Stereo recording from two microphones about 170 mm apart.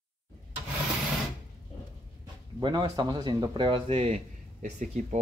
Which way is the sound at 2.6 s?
25° right (ahead or behind).